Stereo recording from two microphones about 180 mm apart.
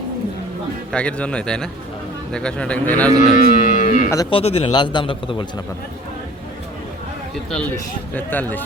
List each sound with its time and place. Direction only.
0.9 s a man's voice: 5° left (ahead or behind)
3.2 s speech: 45° left (ahead or behind)
4.1 s a man's voice: 25° left (ahead or behind)
8.1 s speech: 10° left (ahead or behind)